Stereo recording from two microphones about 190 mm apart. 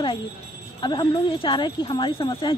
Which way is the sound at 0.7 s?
25° left (ahead or behind).